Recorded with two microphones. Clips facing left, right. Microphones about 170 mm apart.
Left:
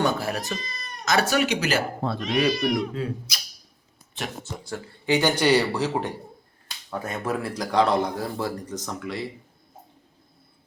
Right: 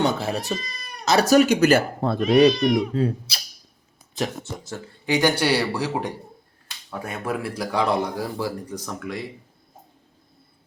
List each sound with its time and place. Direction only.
0.0 s cat: 25° right (ahead or behind)
1.0 s speech: 40° right (ahead or behind)
2.5 s speech: 5° left (ahead or behind)
2.9 s speech: 35° right (ahead or behind)
4.7 s speech: 15° right (ahead or behind)